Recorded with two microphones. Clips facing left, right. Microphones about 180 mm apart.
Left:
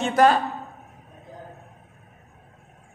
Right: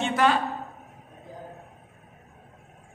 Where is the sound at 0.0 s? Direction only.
40° left (ahead or behind).